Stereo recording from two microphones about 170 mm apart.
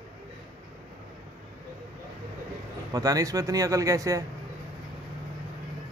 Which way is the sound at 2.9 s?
20° right (ahead or behind).